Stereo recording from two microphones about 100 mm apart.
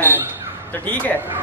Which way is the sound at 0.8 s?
15° left (ahead or behind).